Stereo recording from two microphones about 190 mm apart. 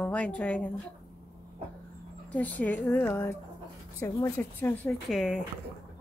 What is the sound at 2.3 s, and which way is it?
A woman's voice, 10° left (ahead or behind).